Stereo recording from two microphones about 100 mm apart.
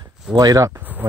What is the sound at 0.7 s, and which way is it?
Speech, 20° right (ahead or behind).